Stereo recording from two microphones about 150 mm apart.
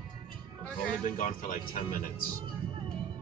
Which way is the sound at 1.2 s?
60° left (ahead or behind).